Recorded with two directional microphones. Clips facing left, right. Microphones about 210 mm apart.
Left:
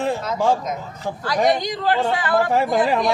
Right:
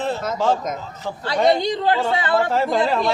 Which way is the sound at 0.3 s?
15° left (ahead or behind).